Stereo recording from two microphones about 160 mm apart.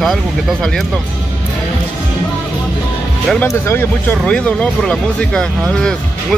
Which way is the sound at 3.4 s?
15° left (ahead or behind).